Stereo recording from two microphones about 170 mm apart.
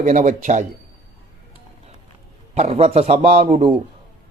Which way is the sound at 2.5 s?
35° right (ahead or behind).